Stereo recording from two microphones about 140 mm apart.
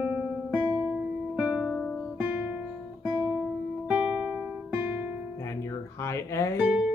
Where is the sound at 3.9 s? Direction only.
10° right (ahead or behind).